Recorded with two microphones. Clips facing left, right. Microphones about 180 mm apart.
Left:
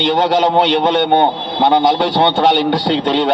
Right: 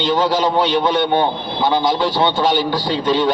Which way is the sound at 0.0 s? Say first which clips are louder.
Left 3 dB; 65° left (ahead or behind).